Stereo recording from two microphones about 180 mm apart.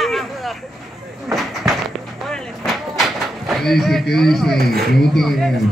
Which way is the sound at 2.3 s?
Centre (ahead or behind).